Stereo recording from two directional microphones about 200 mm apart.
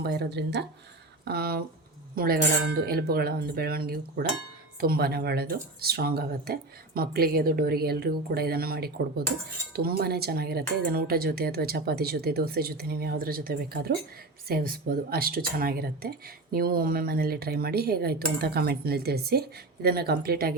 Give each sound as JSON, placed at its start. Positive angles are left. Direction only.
{"t": 0.0, "sound": "speech", "side_deg": -50}